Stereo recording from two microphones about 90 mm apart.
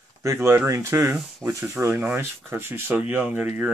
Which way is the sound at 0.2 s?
35° right (ahead or behind).